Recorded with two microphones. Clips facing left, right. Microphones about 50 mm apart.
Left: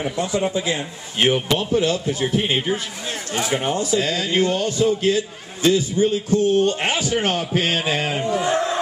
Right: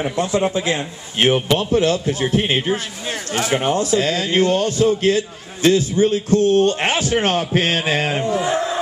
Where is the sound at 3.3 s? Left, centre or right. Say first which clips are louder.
Right 3 dB; right.